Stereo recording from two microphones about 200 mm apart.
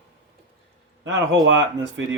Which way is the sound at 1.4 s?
65° right (ahead or behind).